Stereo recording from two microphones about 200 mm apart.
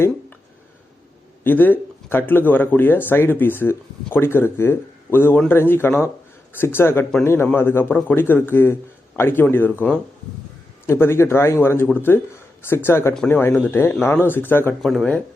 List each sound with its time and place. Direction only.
1.5 s speech: 10° left (ahead or behind)